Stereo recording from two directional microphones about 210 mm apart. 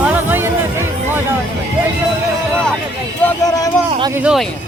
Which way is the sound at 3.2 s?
15° left (ahead or behind).